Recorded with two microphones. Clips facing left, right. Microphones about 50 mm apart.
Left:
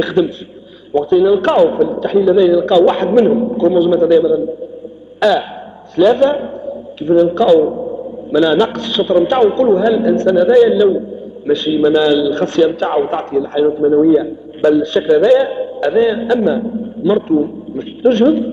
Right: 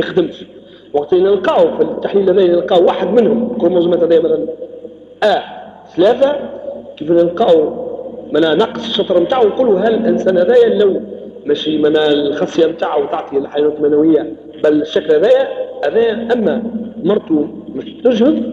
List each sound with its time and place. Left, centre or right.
0.0 s a man's voice: centre